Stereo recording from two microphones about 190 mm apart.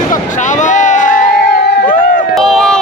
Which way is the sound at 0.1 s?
40° left (ahead or behind).